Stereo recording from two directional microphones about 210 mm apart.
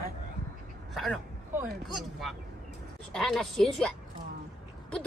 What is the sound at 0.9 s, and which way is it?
Speech, centre (ahead or behind).